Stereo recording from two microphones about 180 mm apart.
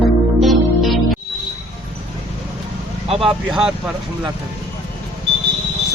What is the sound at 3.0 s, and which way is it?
Vehicle, 35° right (ahead or behind).